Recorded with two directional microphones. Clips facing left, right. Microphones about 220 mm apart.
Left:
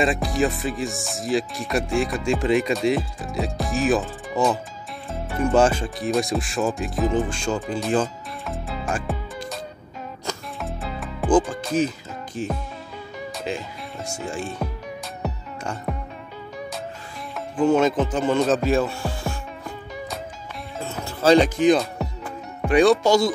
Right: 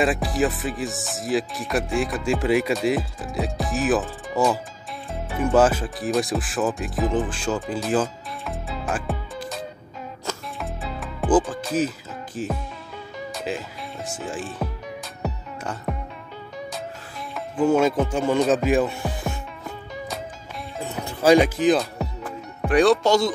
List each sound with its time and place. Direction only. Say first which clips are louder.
0.0 s speech: even; 5° right (ahead or behind)
10.2 s music: even; centre (ahead or behind)
12.4 s speech: even; 5° right (ahead or behind)
15.2 s music: even; centre (ahead or behind)
17.6 s speech: even; 10° right (ahead or behind)
18.5 s music: right 1 dB; 15° right (ahead or behind)
20.8 s music: even; 15° right (ahead or behind)
21.5 s music: left 2 dB; centre (ahead or behind)
23.0 s speech: left 1 dB; 10° left (ahead or behind)